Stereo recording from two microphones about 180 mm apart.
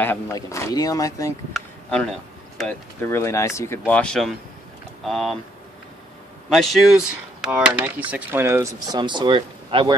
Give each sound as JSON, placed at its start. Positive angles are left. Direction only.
{"t": 0.0, "sound": "speech", "side_deg": 15}
{"t": 1.5, "sound": "speech", "side_deg": 5}
{"t": 6.5, "sound": "speech", "side_deg": 0}